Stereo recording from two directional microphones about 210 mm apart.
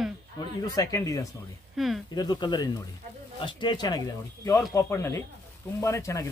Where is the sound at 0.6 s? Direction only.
15° left (ahead or behind).